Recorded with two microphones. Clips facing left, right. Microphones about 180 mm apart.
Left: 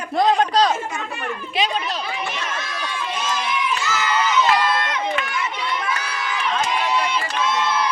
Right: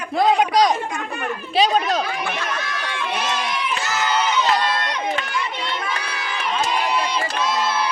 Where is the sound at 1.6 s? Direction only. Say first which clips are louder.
Right 6 dB; 40° right (ahead or behind).